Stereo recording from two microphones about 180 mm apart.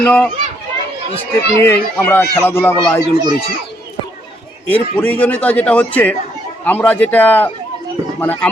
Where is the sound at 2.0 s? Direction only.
10° left (ahead or behind).